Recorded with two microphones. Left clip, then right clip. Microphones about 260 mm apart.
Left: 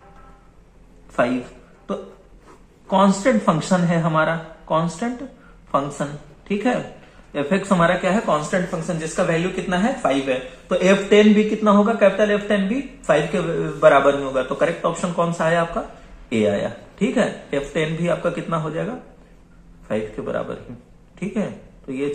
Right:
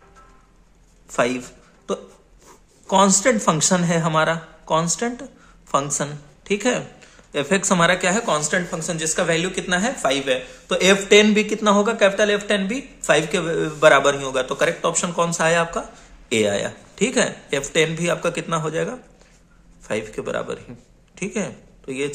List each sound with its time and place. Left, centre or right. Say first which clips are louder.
1.1 s speech: even; right
2.9 s speech: right 1 dB; right
8.4 s speech: even; right
19.9 s speech: left 1 dB; right